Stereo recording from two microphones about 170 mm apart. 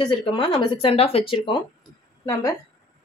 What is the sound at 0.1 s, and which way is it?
Speech, 30° left (ahead or behind).